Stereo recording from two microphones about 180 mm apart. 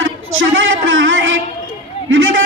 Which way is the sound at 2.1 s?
90° right.